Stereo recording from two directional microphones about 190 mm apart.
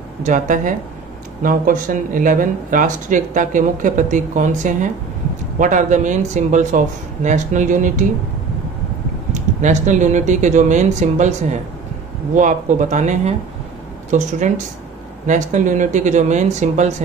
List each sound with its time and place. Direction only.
0.2 s speech: 40° right (ahead or behind)
9.3 s speech: 40° right (ahead or behind)